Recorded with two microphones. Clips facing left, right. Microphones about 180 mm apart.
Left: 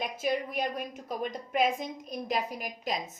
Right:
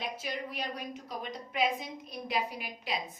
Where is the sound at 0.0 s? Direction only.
50° left (ahead or behind).